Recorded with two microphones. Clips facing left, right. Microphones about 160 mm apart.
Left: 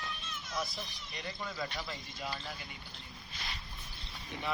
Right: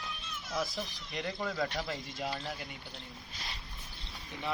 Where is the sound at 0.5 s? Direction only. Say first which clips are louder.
Right 4 dB; 90° right; by 2.0 s 60° right (ahead or behind).